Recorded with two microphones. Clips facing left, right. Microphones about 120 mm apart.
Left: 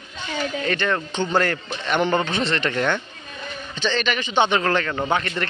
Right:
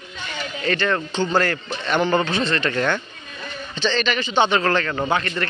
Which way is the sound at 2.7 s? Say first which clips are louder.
Right 1 dB; 10° left (ahead or behind).